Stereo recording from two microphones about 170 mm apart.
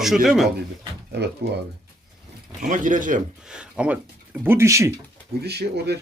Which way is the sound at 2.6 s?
50° right (ahead or behind).